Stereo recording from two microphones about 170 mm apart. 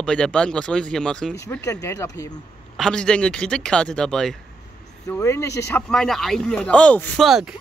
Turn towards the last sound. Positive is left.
turn(degrees=0)  # may be behind; listen again after turning